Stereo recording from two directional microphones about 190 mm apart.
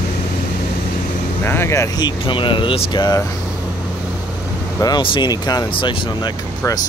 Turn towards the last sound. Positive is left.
turn(degrees=20)  # may be behind; listen again after turning